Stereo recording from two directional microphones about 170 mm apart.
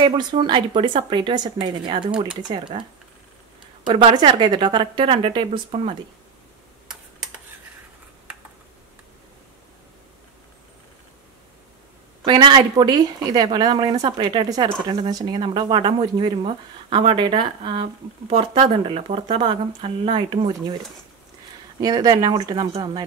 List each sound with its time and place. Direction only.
0.0 s speech: 25° right (ahead or behind)
3.8 s speech: 30° right (ahead or behind)
12.3 s a woman's voice: 25° right (ahead or behind)
21.7 s speech: 20° right (ahead or behind)